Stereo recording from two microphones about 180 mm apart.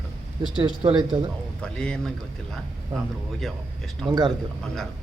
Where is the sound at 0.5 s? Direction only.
25° right (ahead or behind).